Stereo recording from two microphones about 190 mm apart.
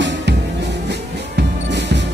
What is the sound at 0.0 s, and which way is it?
Music, 65° right (ahead or behind).